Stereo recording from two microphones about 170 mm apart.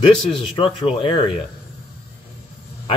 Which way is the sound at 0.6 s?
30° left (ahead or behind).